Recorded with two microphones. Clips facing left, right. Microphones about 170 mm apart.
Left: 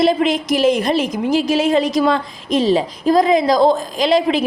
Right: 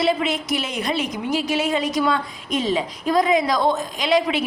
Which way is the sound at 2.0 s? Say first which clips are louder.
Left 5 dB; 30° left (ahead or behind).